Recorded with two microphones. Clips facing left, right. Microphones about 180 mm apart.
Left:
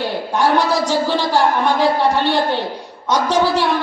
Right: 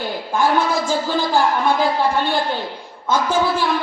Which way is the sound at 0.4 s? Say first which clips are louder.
Left 2 dB; 75° left (ahead or behind).